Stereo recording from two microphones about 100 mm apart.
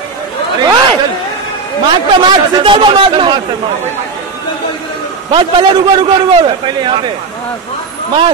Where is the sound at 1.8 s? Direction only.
55° right (ahead or behind).